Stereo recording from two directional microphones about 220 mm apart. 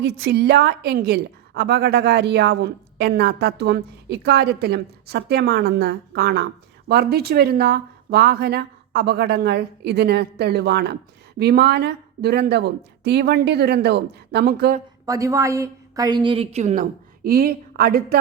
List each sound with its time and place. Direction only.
0.0 s a woman's voice: 50° right (ahead or behind)
15.0 s a woman's voice: 15° right (ahead or behind); by 16.8 s 30° right (ahead or behind)
17.2 s a woman's voice: 45° right (ahead or behind)